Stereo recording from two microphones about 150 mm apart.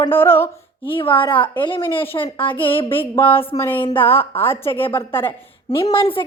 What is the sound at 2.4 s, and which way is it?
A woman's voice, 10° left (ahead or behind).